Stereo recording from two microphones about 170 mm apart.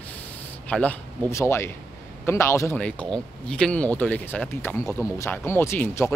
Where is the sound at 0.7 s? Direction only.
10° left (ahead or behind).